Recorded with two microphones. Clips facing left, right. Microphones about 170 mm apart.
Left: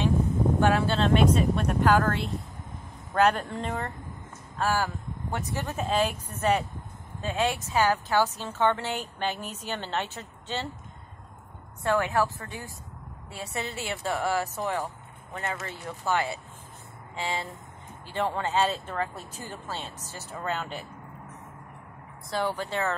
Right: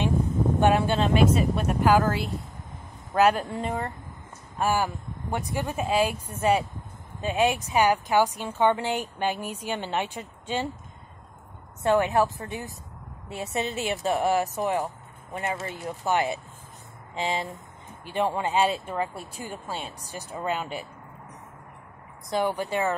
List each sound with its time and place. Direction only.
0.6 s speech: 20° right (ahead or behind)
11.8 s speech: 20° right (ahead or behind)
22.3 s speech: 15° right (ahead or behind)